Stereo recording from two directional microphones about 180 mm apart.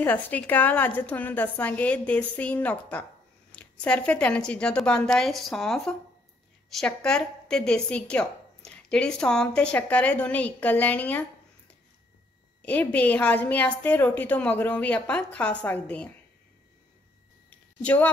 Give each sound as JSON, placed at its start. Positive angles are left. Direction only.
{"t": 0.0, "sound": "a woman's voice", "side_deg": 10}
{"t": 17.8, "sound": "a woman's voice", "side_deg": 5}